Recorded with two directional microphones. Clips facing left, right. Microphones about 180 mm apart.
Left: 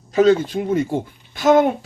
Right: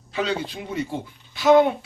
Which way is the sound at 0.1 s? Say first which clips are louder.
Left 12 dB; 45° left (ahead or behind).